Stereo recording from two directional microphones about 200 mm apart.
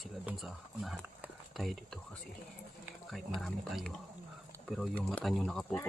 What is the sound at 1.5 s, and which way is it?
Speech, centre (ahead or behind).